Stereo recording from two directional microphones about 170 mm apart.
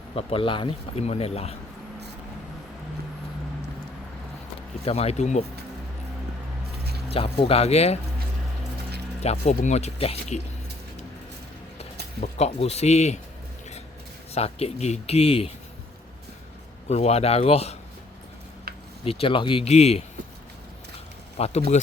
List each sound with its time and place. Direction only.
0.2 s speech: 35° left (ahead or behind)
4.9 s speech: 40° left (ahead or behind)
7.1 s speech: 35° left (ahead or behind)
9.2 s speech: 40° left (ahead or behind)
12.2 s speech: 40° left (ahead or behind)
14.3 s speech: 35° left (ahead or behind)
16.9 s speech: 40° left (ahead or behind)
18.7 s a sound: 65° right (ahead or behind)
19.0 s speech: 30° left (ahead or behind)
21.3 s speech: 40° left (ahead or behind)